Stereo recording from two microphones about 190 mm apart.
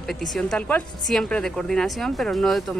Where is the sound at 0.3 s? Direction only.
5° left (ahead or behind).